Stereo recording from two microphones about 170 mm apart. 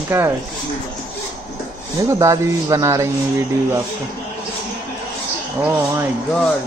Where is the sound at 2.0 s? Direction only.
20° right (ahead or behind).